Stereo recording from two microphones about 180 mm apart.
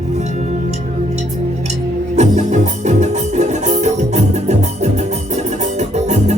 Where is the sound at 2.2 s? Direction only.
40° right (ahead or behind).